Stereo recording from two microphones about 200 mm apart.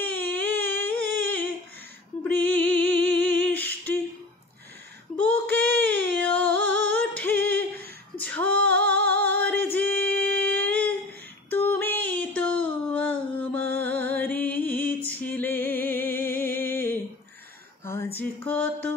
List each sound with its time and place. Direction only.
0.0 s a sound: 10° left (ahead or behind)
2.2 s music: 10° left (ahead or behind)
3.2 s humming: 10° left (ahead or behind)
5.1 s child singing: 5° left (ahead or behind)
6.2 s music: 10° left (ahead or behind)
6.9 s female singing: 10° left (ahead or behind)
11.5 s a sound: 10° left (ahead or behind)
13.7 s music: 10° left (ahead or behind)
17.8 s a sound: 10° left (ahead or behind)